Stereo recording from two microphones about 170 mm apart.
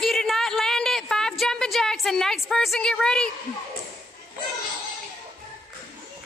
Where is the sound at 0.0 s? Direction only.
Centre (ahead or behind).